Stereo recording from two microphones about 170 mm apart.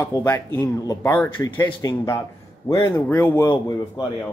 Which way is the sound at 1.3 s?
30° left (ahead or behind).